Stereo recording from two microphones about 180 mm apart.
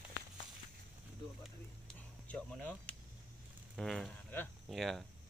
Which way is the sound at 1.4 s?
5° left (ahead or behind).